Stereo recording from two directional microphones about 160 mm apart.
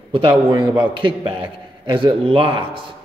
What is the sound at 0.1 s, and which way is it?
A man's voice, 30° right (ahead or behind).